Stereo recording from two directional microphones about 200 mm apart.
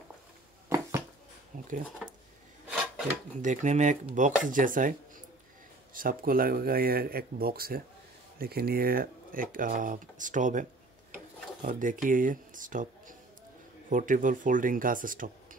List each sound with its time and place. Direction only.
2.7 s filing: 5° right (ahead or behind)
3.4 s speech: 35° right (ahead or behind)
5.9 s speech: 45° right (ahead or behind)